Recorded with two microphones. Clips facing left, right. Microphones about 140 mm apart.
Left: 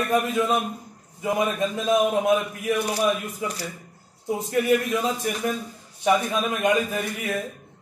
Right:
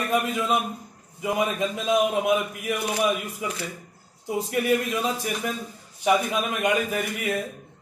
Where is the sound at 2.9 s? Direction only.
35° left (ahead or behind).